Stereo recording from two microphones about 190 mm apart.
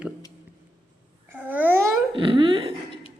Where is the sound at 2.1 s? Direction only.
25° right (ahead or behind).